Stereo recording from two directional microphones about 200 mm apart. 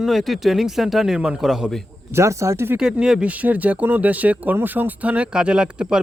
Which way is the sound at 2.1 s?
15° right (ahead or behind).